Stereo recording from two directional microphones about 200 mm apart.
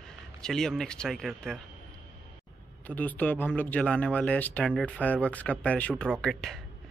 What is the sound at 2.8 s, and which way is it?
Speech, 10° left (ahead or behind).